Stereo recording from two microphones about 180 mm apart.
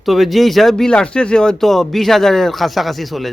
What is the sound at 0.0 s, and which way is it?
Speech, centre (ahead or behind).